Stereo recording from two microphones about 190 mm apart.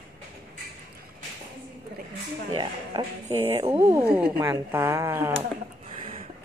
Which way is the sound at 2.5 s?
25° right (ahead or behind).